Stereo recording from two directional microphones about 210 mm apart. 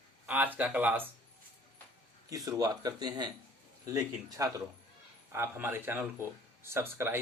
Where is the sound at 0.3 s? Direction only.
10° right (ahead or behind).